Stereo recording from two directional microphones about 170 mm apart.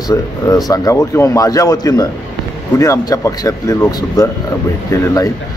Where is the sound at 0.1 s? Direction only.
20° left (ahead or behind).